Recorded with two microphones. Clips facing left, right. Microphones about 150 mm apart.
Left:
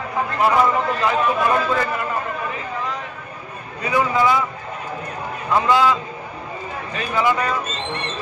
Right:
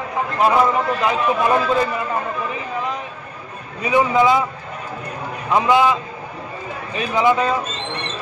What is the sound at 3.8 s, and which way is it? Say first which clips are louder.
Speech: right 3 dB; 20° right (ahead or behind).